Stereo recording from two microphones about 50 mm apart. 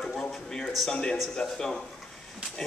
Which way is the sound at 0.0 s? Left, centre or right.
Centre.